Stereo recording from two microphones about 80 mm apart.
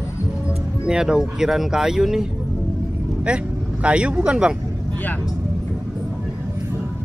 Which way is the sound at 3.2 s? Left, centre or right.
Centre.